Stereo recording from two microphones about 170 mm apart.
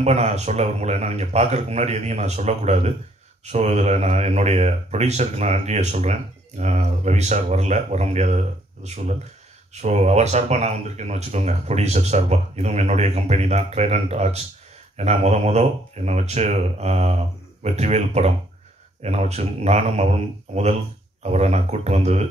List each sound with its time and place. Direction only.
0.0 s speech: 40° right (ahead or behind)